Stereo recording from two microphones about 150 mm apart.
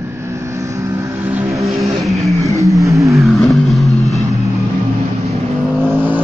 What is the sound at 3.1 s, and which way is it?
Vehicle, centre (ahead or behind).